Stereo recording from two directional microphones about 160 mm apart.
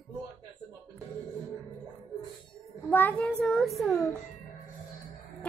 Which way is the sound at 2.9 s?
10° left (ahead or behind).